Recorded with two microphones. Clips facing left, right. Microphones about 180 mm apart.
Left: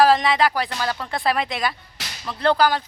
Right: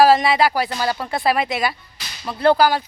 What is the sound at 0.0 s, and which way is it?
Speech, 5° right (ahead or behind).